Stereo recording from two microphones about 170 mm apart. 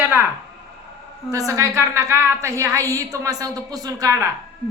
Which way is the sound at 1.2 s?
20° right (ahead or behind).